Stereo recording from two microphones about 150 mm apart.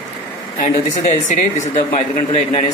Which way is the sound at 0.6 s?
55° left (ahead or behind).